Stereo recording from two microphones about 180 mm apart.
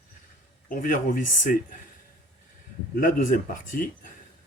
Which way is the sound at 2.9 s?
50° left (ahead or behind).